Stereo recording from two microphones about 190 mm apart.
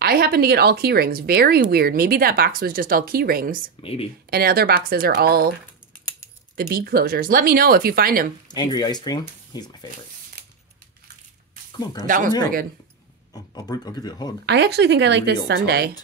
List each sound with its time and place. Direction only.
0.0 s speech: 55° right (ahead or behind)
3.8 s speech: 30° left (ahead or behind)
4.3 s speech: 55° right (ahead or behind)
8.5 s speech: 20° left (ahead or behind)
10.4 s scissors: 55° right (ahead or behind)
13.3 s speech: 20° left (ahead or behind)
14.4 s speech: 60° right (ahead or behind)